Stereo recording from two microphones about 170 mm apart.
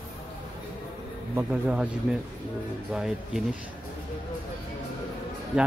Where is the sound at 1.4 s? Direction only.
5° right (ahead or behind).